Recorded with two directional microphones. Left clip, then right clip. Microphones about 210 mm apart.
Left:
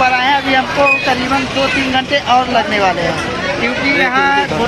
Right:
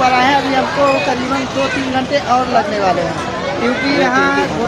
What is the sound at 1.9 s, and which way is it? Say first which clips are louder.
Speech: left 1 dB; 5° right (ahead or behind).